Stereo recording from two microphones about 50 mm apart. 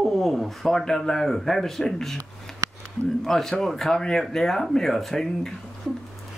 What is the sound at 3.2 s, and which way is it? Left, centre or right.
Speech, centre.